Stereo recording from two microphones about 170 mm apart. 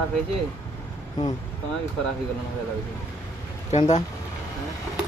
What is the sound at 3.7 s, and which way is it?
Speech, 45° left (ahead or behind).